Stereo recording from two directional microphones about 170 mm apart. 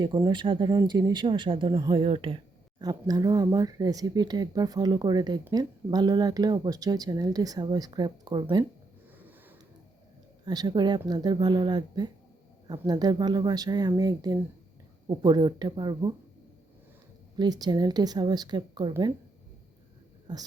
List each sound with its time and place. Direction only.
0.0 s speech: 25° right (ahead or behind)
10.4 s speech: 25° right (ahead or behind)
17.3 s speech: 25° right (ahead or behind)
20.3 s speech: 25° right (ahead or behind)